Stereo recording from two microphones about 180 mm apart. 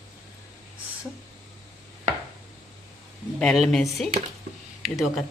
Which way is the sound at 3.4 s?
Centre (ahead or behind).